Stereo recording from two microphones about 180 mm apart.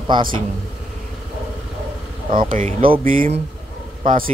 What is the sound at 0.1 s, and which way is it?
Speech, 25° right (ahead or behind).